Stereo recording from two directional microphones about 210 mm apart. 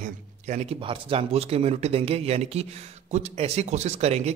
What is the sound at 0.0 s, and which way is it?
Speech, 35° right (ahead or behind).